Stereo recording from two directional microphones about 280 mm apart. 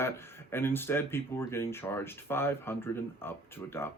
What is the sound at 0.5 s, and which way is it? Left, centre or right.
Speech, centre.